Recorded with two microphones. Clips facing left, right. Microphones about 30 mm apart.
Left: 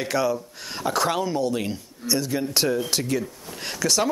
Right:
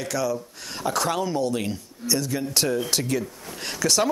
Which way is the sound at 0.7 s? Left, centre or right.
Centre.